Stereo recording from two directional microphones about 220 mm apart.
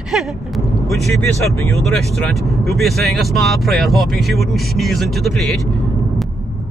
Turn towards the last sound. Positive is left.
turn(degrees=0)  # may be behind; listen again after turning